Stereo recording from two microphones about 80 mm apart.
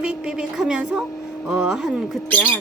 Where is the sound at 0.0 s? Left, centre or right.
Centre.